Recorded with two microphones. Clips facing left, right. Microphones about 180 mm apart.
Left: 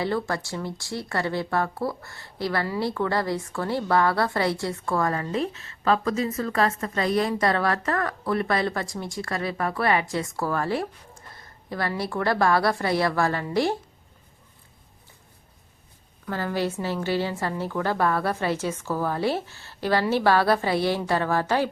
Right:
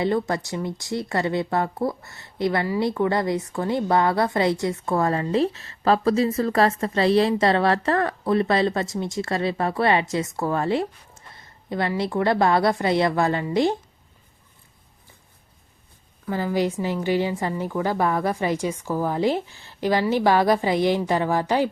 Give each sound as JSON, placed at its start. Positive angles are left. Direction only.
{"t": 0.0, "sound": "speech", "side_deg": -20}
{"t": 16.2, "sound": "a woman's voice", "side_deg": -10}